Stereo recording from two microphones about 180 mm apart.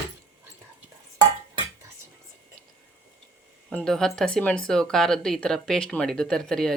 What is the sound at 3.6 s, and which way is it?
Speech, 5° left (ahead or behind).